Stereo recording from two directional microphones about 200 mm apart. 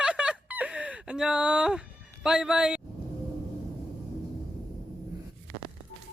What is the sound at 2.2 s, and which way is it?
Speech, 5° right (ahead or behind).